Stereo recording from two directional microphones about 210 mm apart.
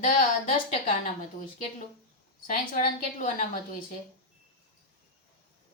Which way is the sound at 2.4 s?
40° left (ahead or behind).